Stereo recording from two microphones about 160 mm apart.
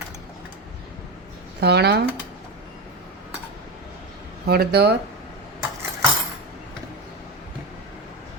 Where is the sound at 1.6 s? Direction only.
90° right.